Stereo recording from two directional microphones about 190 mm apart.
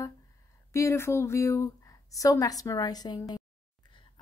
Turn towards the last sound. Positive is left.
turn(degrees=20)  # may be behind; listen again after turning